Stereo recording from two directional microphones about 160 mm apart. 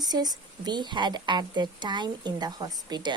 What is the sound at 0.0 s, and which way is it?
A woman's voice, 25° right (ahead or behind).